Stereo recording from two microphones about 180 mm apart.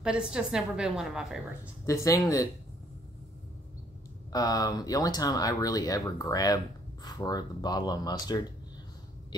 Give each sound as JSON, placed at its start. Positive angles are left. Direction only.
{"t": 0.0, "sound": "a woman's voice", "side_deg": -5}
{"t": 1.9, "sound": "speech", "side_deg": 20}
{"t": 4.3, "sound": "speech", "side_deg": 20}